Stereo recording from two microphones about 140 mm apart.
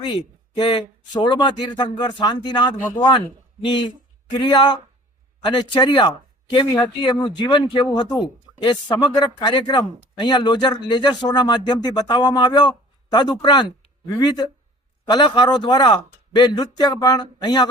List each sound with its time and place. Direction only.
0.6 s speech: 35° left (ahead or behind)